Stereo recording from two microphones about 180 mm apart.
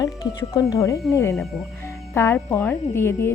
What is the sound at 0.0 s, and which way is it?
Speech, 20° left (ahead or behind).